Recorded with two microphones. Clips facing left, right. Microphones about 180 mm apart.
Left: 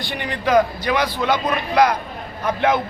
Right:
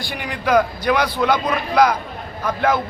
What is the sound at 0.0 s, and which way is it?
A man's voice, 10° right (ahead or behind).